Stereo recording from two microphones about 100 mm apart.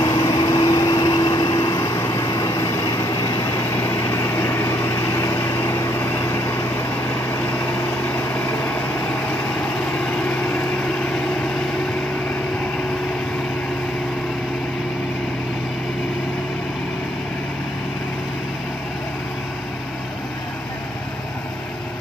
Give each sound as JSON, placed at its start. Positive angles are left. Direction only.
{"t": 0.1, "sound": "vehicle", "side_deg": 45}
{"t": 3.8, "sound": "vehicle", "side_deg": 30}
{"t": 10.2, "sound": "vehicle", "side_deg": 15}